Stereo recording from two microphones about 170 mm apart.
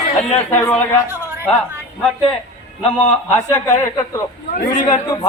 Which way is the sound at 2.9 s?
10° left (ahead or behind).